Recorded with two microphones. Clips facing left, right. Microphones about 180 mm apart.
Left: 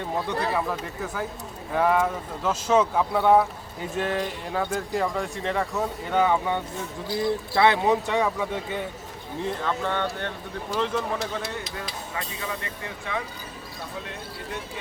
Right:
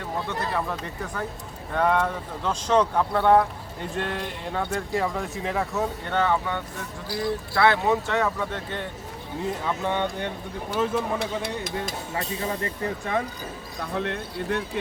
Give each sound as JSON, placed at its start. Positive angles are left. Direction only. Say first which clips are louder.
{"t": 0.3, "sound": "speech", "louder": "left 2 dB", "side_deg": 5}
{"t": 9.4, "sound": "speech", "louder": "even", "side_deg": -10}
{"t": 11.2, "sound": "speech", "louder": "right 2 dB", "side_deg": -55}
{"t": 12.1, "sound": "speech", "louder": "right 4 dB", "side_deg": -35}
{"t": 13.9, "sound": "speech", "louder": "right 11 dB", "side_deg": -65}